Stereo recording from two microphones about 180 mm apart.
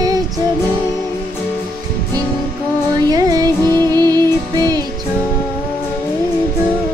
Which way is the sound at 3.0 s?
20° right (ahead or behind).